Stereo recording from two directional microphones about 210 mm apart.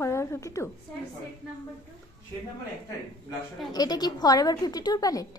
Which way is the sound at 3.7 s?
20° left (ahead or behind).